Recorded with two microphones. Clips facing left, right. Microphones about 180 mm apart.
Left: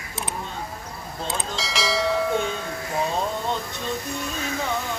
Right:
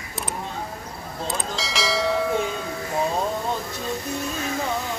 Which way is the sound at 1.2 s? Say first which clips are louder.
Right 1 dB; centre (ahead or behind).